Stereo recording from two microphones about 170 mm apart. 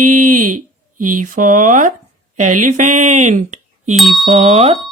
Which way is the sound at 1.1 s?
50° right (ahead or behind).